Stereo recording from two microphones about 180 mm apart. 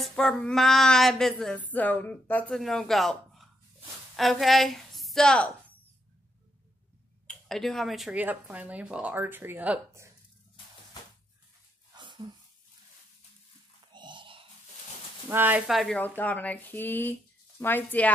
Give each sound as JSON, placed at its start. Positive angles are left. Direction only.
{"t": 0.0, "sound": "a sound", "side_deg": 5}
{"t": 4.2, "sound": "a woman's voice", "side_deg": 0}
{"t": 7.2, "sound": "speech", "side_deg": 0}
{"t": 12.0, "sound": "a sound", "side_deg": -25}
{"t": 13.9, "sound": "music", "side_deg": -25}
{"t": 15.2, "sound": "speech", "side_deg": -10}